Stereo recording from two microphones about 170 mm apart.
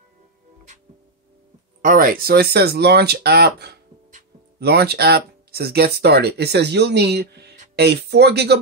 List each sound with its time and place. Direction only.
1.8 s speech: 55° right (ahead or behind); by 8.5 s 75° right (ahead or behind)